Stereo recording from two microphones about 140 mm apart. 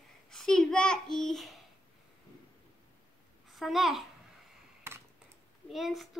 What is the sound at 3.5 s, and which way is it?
Speech, centre (ahead or behind).